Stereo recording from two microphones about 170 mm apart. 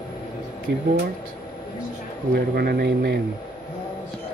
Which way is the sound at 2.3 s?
65° right (ahead or behind).